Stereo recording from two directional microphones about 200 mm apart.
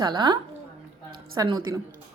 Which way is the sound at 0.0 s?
20° right (ahead or behind).